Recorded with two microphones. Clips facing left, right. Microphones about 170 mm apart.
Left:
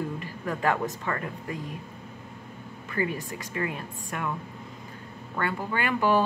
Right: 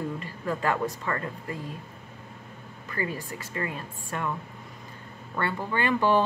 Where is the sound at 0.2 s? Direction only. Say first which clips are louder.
Left 1 dB; 15° left (ahead or behind).